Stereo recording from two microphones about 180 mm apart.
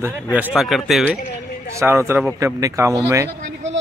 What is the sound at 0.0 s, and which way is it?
Speech, 10° right (ahead or behind).